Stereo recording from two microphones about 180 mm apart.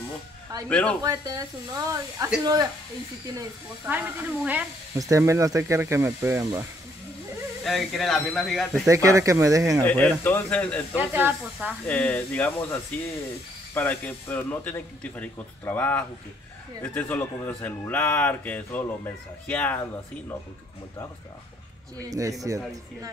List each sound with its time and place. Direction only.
0.7 s speech: 5° left (ahead or behind)
1.0 s speech: 20° right (ahead or behind)
3.8 s speech: 10° right (ahead or behind)
7.6 s speech: centre (ahead or behind)
8.8 s speech: 15° right (ahead or behind)
9.8 s a man's voice: 10° left (ahead or behind)
11.0 s speech: 10° right (ahead or behind)
11.9 s a man's voice: 10° left (ahead or behind)
22.5 s speech: 15° right (ahead or behind)